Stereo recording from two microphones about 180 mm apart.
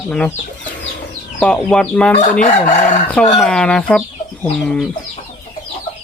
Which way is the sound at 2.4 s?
40° left (ahead or behind).